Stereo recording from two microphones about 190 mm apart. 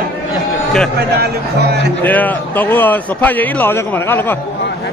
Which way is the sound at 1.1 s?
60° right (ahead or behind).